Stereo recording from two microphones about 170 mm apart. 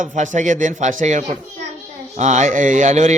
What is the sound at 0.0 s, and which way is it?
A man's voice, 50° right (ahead or behind).